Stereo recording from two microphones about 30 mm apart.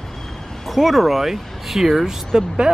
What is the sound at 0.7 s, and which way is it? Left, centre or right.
Speech, centre.